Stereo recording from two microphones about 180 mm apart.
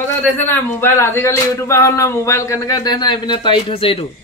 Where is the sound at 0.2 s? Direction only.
10° left (ahead or behind); by 4.1 s 30° left (ahead or behind).